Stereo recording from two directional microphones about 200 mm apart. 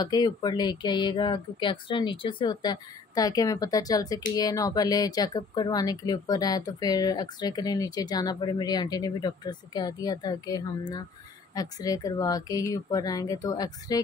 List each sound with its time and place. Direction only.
0.0 s speech: 20° left (ahead or behind)